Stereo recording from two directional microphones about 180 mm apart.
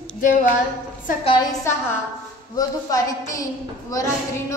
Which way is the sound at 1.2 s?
25° left (ahead or behind).